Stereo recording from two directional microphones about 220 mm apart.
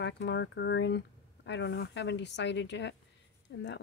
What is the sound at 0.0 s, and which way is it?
Speech, 50° left (ahead or behind).